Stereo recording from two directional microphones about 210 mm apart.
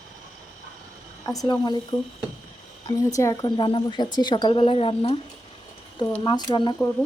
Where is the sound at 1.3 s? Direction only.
20° left (ahead or behind).